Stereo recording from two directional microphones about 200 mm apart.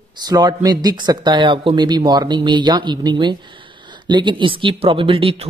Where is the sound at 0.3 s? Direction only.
20° right (ahead or behind).